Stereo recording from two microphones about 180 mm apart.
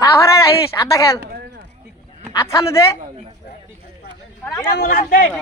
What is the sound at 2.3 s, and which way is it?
Speech, 20° left (ahead or behind).